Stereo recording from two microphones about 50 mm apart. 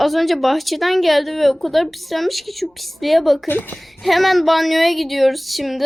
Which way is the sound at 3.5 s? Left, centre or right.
Left.